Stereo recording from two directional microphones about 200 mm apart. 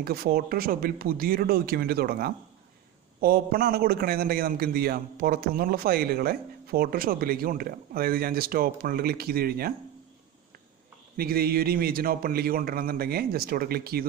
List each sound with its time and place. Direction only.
0.0 s a man's voice: 50° right (ahead or behind)
11.1 s a man's voice: 50° right (ahead or behind)